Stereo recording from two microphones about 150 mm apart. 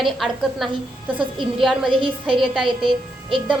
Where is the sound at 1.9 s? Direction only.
35° right (ahead or behind).